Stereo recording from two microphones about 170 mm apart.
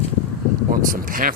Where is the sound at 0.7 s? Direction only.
55° right (ahead or behind).